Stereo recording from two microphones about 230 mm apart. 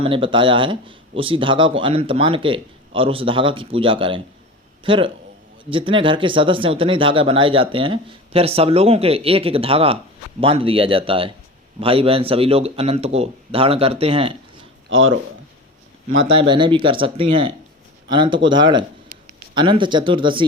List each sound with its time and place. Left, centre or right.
0.0 s speech: right
14.8 s speech: right
16.5 s speech: right